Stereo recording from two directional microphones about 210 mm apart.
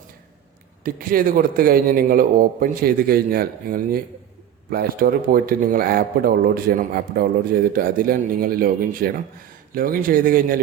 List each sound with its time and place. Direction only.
0.9 s speech: 40° right (ahead or behind)